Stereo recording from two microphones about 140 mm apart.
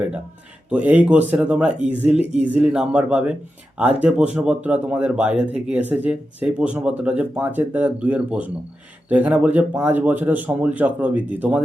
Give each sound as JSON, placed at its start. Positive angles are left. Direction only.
{"t": 0.7, "sound": "speech", "side_deg": -10}